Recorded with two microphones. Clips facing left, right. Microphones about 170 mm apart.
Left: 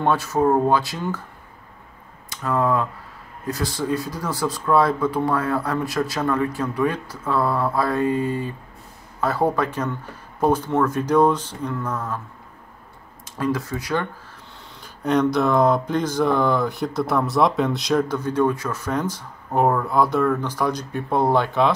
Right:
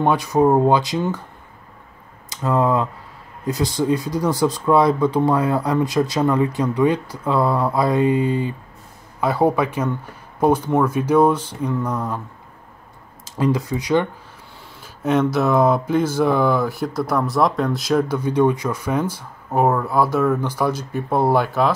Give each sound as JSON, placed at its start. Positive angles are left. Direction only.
{"t": 0.0, "sound": "speech", "side_deg": -15}
{"t": 2.4, "sound": "speech", "side_deg": -20}
{"t": 13.4, "sound": "speech", "side_deg": -15}
{"t": 14.8, "sound": "speech", "side_deg": -5}